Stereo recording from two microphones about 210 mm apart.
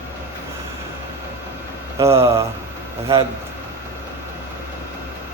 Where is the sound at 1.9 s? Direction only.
10° right (ahead or behind).